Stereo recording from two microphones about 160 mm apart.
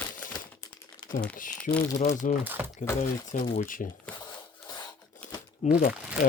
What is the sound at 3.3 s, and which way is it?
Speech, 55° left (ahead or behind).